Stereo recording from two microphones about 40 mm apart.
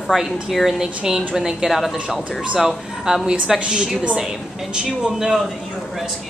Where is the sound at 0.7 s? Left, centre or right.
Centre.